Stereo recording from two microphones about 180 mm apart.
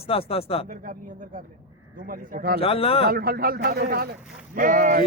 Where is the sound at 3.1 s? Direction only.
55° right (ahead or behind).